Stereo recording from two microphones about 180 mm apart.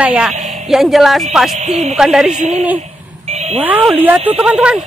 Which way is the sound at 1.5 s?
40° right (ahead or behind).